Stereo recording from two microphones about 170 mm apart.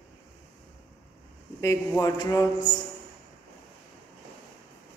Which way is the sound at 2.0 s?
20° left (ahead or behind).